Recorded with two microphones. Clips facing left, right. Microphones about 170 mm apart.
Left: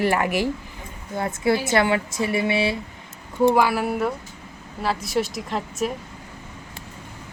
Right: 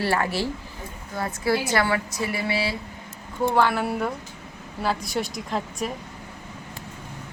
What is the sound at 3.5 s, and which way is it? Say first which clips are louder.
A woman's voice: left 1 dB; 10° left (ahead or behind).